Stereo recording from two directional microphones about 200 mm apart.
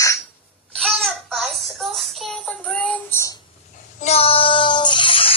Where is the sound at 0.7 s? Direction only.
Centre (ahead or behind).